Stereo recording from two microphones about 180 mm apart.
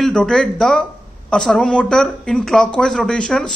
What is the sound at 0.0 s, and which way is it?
Speech, 5° left (ahead or behind).